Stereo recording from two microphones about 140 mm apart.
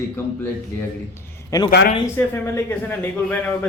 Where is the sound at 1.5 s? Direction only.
35° left (ahead or behind).